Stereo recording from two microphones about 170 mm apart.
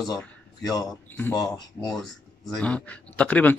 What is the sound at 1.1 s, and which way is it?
Speech, 15° left (ahead or behind).